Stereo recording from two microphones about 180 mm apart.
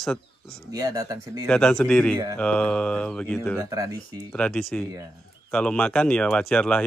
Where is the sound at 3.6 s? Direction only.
20° right (ahead or behind).